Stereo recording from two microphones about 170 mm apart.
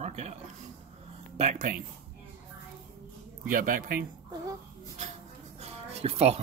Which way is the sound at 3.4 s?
55° right (ahead or behind).